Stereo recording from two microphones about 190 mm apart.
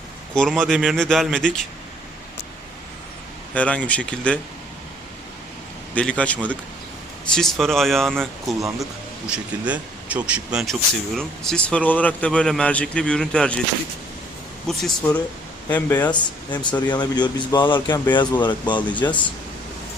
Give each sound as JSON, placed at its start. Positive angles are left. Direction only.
{"t": 0.3, "sound": "speech", "side_deg": 0}
{"t": 3.5, "sound": "speech", "side_deg": 5}
{"t": 5.9, "sound": "speech", "side_deg": 5}
{"t": 14.7, "sound": "speech", "side_deg": 0}
{"t": 16.1, "sound": "speech", "side_deg": 25}